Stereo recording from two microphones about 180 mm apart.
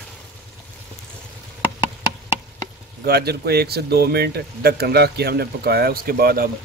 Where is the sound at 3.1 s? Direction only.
60° right (ahead or behind).